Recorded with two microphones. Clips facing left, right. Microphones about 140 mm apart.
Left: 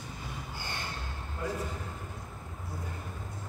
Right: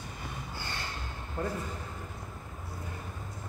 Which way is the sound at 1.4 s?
55° right (ahead or behind).